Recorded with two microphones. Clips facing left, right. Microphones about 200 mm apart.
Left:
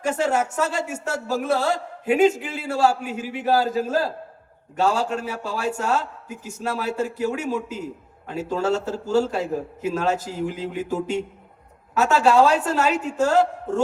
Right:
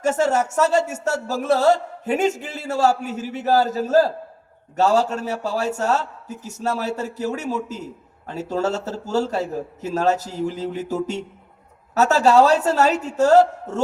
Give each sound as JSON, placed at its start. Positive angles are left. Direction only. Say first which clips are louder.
{"t": 0.0, "sound": "a man's voice", "louder": "right 3 dB", "side_deg": -45}